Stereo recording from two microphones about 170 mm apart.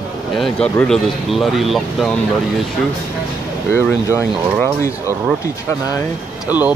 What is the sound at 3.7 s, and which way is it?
Speech, 15° left (ahead or behind).